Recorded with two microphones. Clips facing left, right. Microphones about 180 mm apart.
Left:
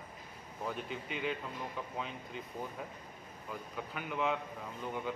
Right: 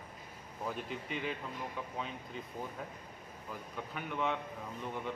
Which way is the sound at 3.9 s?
Centre (ahead or behind).